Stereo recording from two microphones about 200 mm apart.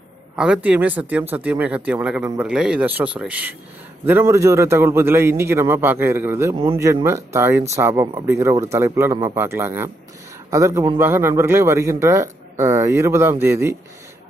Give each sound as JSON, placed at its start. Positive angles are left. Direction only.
{"t": 0.4, "sound": "speech", "side_deg": -5}